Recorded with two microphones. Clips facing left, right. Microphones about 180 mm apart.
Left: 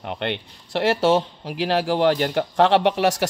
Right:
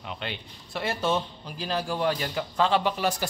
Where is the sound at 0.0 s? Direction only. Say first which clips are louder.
Left 9 dB; 60° left (ahead or behind).